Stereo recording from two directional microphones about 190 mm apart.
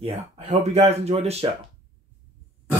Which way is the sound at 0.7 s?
35° right (ahead or behind).